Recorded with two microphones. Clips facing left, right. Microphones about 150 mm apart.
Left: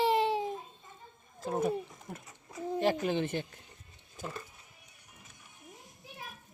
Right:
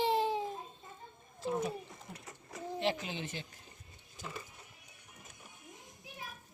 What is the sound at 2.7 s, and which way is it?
Speech, 45° left (ahead or behind).